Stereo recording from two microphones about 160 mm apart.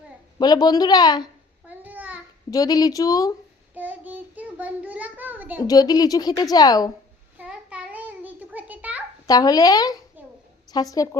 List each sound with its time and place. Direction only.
0.3 s a woman's voice: 25° left (ahead or behind)
1.6 s babbling: 10° right (ahead or behind)
2.5 s a woman's voice: 25° left (ahead or behind)
3.8 s child singing: 10° right (ahead or behind)
5.6 s a woman's voice: 25° left (ahead or behind)
7.3 s a sound: 10° right (ahead or behind)
9.2 s a woman's voice: 25° left (ahead or behind)